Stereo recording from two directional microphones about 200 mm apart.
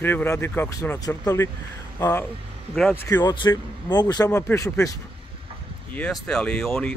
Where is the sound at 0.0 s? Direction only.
10° left (ahead or behind).